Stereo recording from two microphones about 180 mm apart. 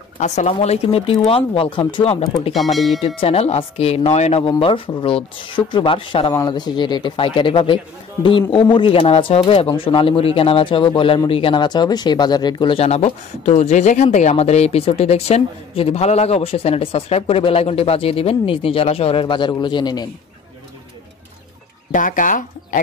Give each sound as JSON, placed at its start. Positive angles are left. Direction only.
{"t": 0.2, "sound": "speech", "side_deg": 40}
{"t": 2.5, "sound": "speech", "side_deg": 0}
{"t": 3.2, "sound": "speech", "side_deg": 35}
{"t": 21.9, "sound": "speech", "side_deg": 45}